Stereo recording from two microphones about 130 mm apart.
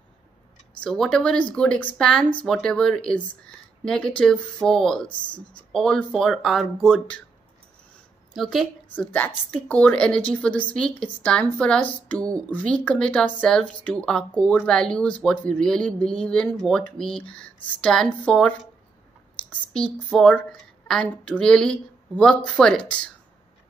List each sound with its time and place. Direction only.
0.7 s speech: 5° left (ahead or behind)
8.4 s speech: centre (ahead or behind)
8.9 s speech: 10° left (ahead or behind)
12.2 s speech: 30° right (ahead or behind)
12.4 s speech: 10° left (ahead or behind)
19.7 s speech: 5° left (ahead or behind)